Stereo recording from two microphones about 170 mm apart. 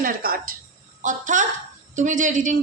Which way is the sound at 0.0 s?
55° right (ahead or behind).